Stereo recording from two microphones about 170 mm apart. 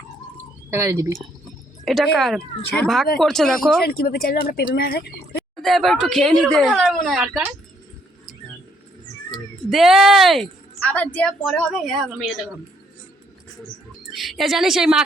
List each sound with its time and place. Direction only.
0.7 s speech: 15° right (ahead or behind)
1.8 s a woman's voice: centre (ahead or behind)
3.8 s speech: 65° left (ahead or behind)
5.6 s a woman's voice: centre (ahead or behind)
9.3 s a woman's voice: centre (ahead or behind)
14.1 s a woman's voice: centre (ahead or behind)